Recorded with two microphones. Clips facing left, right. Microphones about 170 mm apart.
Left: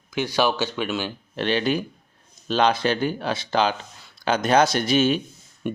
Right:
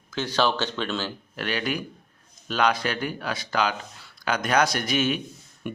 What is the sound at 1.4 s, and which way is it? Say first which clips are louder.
Speech: left 6 dB; 25° left (ahead or behind).